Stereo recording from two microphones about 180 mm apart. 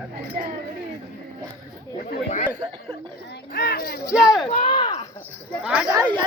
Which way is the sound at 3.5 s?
60° left (ahead or behind).